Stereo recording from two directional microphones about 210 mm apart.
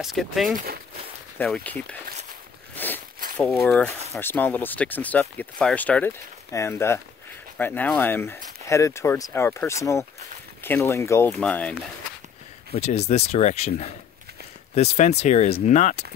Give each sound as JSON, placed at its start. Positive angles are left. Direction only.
{"t": 0.0, "sound": "speech", "side_deg": 0}
{"t": 2.7, "sound": "a sound", "side_deg": 10}
{"t": 3.3, "sound": "speech", "side_deg": 5}
{"t": 12.7, "sound": "speech", "side_deg": 30}